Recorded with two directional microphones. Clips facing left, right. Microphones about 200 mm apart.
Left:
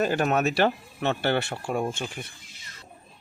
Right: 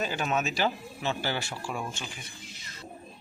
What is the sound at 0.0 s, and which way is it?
Speech, 60° left (ahead or behind).